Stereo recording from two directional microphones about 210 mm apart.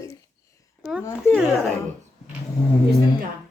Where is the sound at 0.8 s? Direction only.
5° right (ahead or behind).